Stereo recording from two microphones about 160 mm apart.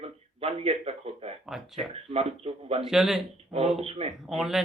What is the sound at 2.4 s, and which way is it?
Speech, 40° right (ahead or behind).